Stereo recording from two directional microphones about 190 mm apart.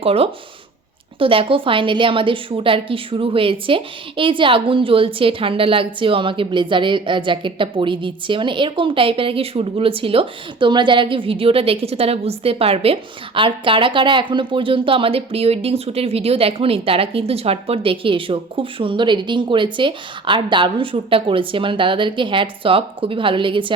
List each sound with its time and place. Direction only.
0.0 s a woman's voice: 30° right (ahead or behind)